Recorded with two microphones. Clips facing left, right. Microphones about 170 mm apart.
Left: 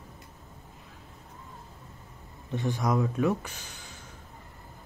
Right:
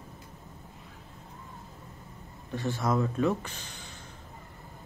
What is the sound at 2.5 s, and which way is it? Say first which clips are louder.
Speech: left 1 dB; 20° left (ahead or behind).